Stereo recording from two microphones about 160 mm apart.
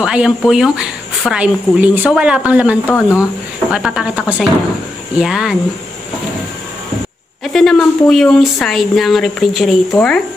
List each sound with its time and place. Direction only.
0.0 s a woman's voice: 5° right (ahead or behind)
2.9 s speech: 15° left (ahead or behind)
3.7 s speech: 5° right (ahead or behind)
7.4 s speech: centre (ahead or behind)